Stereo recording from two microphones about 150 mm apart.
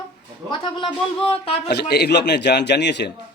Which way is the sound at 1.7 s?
90° left.